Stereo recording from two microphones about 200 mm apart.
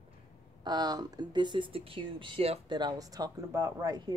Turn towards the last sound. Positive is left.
turn(degrees=-20)  # may be behind; listen again after turning